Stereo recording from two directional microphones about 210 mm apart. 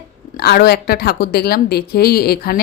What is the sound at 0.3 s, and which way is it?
A woman's voice, 50° left (ahead or behind).